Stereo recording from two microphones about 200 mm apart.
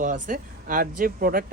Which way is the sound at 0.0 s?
40° right (ahead or behind).